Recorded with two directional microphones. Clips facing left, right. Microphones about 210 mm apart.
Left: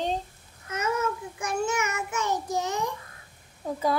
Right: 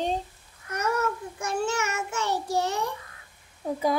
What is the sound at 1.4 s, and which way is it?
A child's voice, 15° left (ahead or behind).